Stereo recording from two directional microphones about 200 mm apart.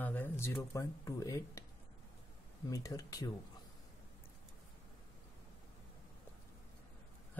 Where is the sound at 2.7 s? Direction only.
20° left (ahead or behind).